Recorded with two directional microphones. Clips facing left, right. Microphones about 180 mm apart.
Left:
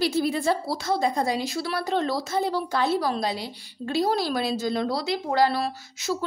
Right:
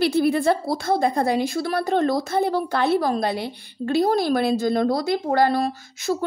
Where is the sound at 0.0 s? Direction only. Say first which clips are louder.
Right 5 dB; 60° right (ahead or behind).